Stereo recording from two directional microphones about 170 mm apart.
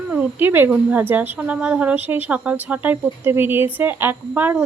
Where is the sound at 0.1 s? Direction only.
10° right (ahead or behind).